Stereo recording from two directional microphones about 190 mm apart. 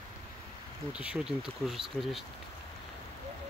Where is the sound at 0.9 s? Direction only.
5° right (ahead or behind).